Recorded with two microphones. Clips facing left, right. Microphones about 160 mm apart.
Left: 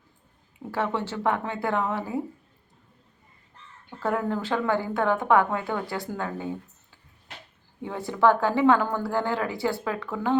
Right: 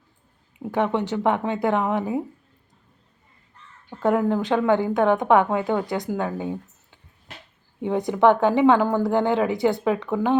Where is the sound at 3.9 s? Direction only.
20° right (ahead or behind).